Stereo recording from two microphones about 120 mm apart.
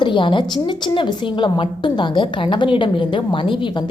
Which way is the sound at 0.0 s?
40° left (ahead or behind).